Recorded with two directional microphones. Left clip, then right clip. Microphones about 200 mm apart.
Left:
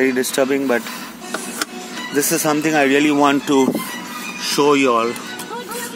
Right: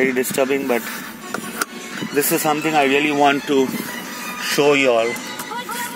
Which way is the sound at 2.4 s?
25° left (ahead or behind).